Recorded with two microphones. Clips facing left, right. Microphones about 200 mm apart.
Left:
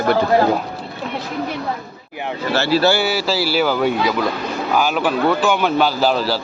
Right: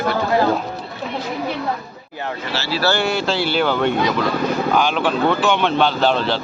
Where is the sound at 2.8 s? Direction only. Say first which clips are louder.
Left 2 dB; 5° left (ahead or behind).